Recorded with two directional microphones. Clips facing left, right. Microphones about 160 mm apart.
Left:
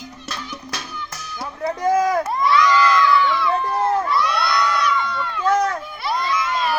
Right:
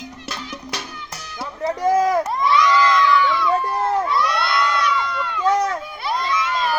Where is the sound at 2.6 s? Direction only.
5° left (ahead or behind).